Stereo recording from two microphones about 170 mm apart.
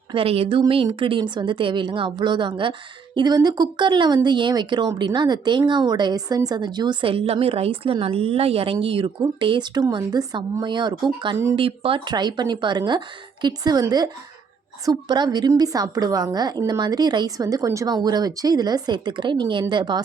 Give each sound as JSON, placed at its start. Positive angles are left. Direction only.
{"t": 0.1, "sound": "a woman's voice", "side_deg": -35}